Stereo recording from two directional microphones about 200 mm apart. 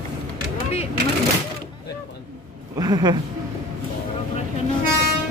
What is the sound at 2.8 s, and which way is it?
Speech, 20° right (ahead or behind).